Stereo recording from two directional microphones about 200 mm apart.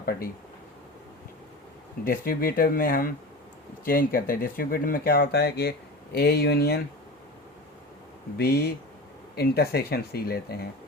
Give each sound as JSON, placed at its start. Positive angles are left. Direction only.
{"t": 0.0, "sound": "speech", "side_deg": 50}
{"t": 2.0, "sound": "speech", "side_deg": 50}
{"t": 8.4, "sound": "speech", "side_deg": 55}